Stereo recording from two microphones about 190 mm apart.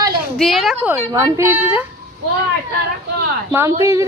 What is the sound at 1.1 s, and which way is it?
Speech, 15° right (ahead or behind).